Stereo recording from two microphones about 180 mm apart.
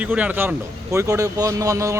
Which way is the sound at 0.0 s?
10° right (ahead or behind).